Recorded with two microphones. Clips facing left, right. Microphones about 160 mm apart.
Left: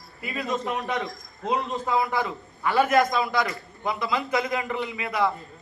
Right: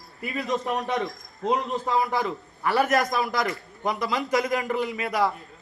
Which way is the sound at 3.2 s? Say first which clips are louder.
Left 1 dB; 40° right (ahead or behind).